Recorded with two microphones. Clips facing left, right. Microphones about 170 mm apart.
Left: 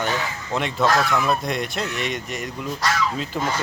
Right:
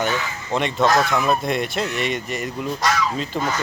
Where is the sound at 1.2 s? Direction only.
Centre (ahead or behind).